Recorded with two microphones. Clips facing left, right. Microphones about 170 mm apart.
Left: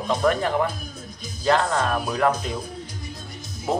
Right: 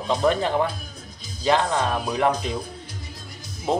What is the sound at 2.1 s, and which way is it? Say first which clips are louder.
Music: even; 20° right (ahead or behind).